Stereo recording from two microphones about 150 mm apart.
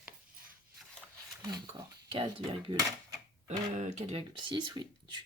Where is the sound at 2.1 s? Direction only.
35° right (ahead or behind).